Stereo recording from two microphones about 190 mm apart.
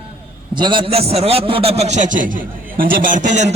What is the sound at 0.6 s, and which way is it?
A man's voice, 25° right (ahead or behind).